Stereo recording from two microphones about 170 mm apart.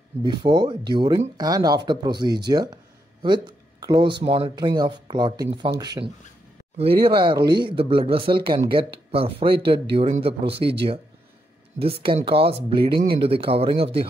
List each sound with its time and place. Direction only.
0.2 s speech: 25° right (ahead or behind)
12.9 s speech: 65° right (ahead or behind)
13.2 s speech: 35° right (ahead or behind)